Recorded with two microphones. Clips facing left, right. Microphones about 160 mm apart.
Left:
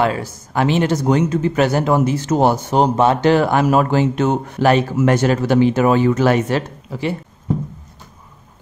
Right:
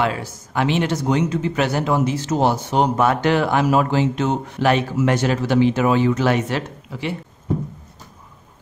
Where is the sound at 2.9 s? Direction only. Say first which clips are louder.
Left 4 dB; 30° left (ahead or behind).